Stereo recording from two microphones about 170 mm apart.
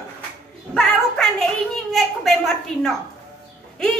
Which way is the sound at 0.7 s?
Centre (ahead or behind).